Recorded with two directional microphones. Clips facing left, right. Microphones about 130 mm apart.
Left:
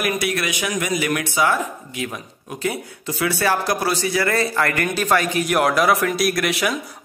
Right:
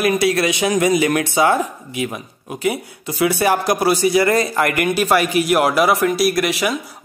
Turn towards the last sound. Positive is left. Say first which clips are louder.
# right 3 dB
turn(degrees=0)  # may be behind; listen again after turning